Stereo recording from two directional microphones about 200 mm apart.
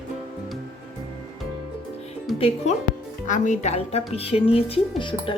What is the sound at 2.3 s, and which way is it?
A woman's voice, 30° left (ahead or behind).